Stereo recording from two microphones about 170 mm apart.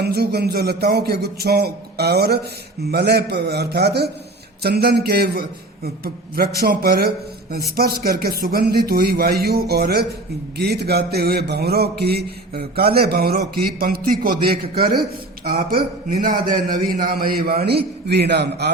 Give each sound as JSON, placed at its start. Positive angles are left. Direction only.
{"t": 0.0, "sound": "a man's voice", "side_deg": -70}